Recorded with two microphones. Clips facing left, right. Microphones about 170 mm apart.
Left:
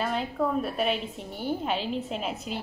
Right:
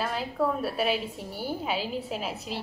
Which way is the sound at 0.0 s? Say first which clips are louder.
Even; centre (ahead or behind).